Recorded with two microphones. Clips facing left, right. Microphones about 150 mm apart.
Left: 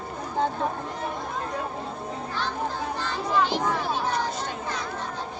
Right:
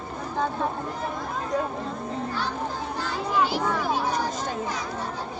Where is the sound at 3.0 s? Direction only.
10° right (ahead or behind).